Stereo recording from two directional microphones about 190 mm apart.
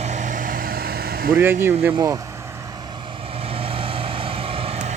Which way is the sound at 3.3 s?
30° right (ahead or behind).